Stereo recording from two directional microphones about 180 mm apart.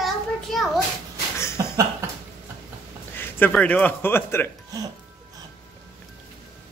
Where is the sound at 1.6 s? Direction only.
15° right (ahead or behind).